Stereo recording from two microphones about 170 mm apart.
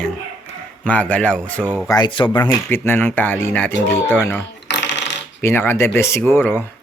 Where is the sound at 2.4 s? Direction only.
15° left (ahead or behind).